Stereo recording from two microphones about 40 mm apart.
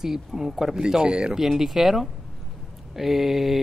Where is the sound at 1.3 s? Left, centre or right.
Centre.